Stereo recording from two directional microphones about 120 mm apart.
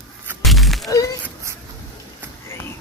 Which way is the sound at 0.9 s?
30° left (ahead or behind).